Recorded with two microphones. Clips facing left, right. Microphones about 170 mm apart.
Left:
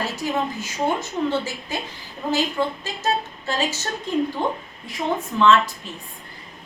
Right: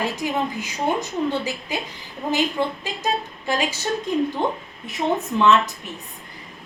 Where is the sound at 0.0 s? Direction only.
15° right (ahead or behind).